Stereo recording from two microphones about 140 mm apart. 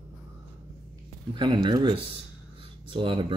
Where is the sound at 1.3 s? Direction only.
35° right (ahead or behind).